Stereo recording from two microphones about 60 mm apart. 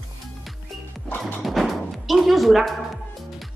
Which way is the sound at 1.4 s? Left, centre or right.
Centre.